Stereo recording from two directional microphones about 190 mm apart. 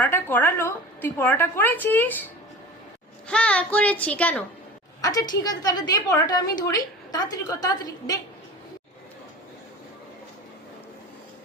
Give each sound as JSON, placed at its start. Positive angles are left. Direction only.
{"t": 0.0, "sound": "a woman's voice", "side_deg": 10}
{"t": 5.4, "sound": "a woman's voice", "side_deg": 20}